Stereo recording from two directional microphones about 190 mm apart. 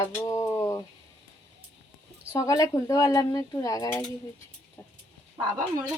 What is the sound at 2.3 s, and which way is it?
A woman's voice, 15° left (ahead or behind).